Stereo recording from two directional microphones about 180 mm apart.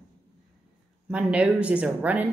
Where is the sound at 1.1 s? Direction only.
5° right (ahead or behind).